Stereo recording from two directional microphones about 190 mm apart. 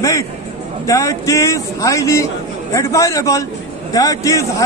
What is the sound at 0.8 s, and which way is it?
A man's voice, 15° left (ahead or behind).